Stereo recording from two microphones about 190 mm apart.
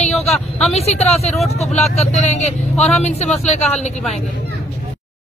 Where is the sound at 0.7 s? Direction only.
35° left (ahead or behind).